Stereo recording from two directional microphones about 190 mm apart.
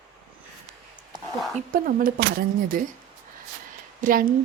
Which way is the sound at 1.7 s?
45° right (ahead or behind).